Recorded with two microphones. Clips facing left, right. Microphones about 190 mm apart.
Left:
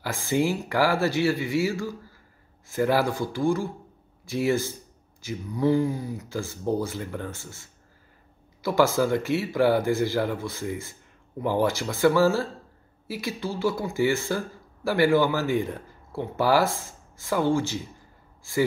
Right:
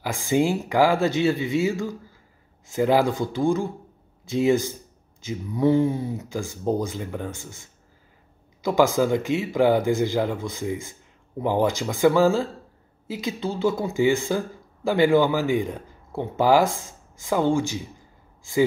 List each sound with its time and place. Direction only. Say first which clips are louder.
0.0 s speech: right 3 dB; 15° right (ahead or behind)